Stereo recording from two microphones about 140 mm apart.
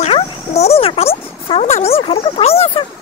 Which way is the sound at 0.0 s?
50° left (ahead or behind).